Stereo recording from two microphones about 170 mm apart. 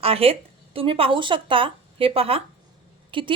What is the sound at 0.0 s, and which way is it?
Speech, 35° right (ahead or behind).